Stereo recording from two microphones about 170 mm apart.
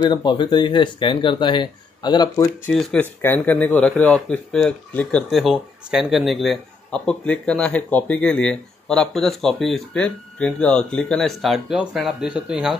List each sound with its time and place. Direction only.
0.0 s speech: 25° left (ahead or behind)
2.6 s speech: 5° left (ahead or behind)